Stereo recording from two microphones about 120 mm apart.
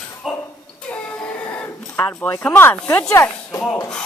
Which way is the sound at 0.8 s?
10° left (ahead or behind).